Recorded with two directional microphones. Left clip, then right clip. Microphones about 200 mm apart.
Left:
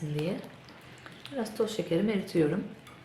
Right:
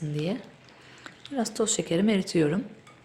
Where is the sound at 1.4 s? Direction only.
55° right (ahead or behind).